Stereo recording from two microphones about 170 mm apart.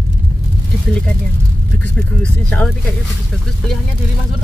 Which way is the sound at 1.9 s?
5° left (ahead or behind).